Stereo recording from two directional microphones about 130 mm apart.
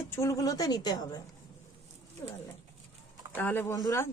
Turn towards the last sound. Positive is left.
turn(degrees=25)  # may be behind; listen again after turning